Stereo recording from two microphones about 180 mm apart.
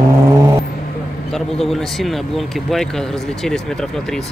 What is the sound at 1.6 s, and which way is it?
Speech, centre (ahead or behind).